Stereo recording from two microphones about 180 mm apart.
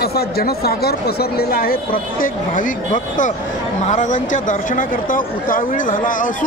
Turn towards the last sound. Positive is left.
turn(degrees=45)  # may be behind; listen again after turning